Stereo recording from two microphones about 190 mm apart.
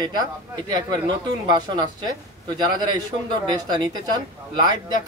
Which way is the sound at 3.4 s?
20° right (ahead or behind).